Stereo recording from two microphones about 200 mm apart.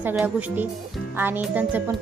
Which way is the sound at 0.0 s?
10° right (ahead or behind).